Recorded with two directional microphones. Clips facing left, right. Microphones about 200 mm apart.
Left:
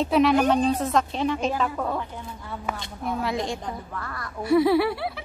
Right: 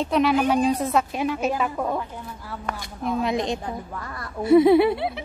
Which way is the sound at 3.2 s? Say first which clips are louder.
Right 4 dB; 20° right (ahead or behind).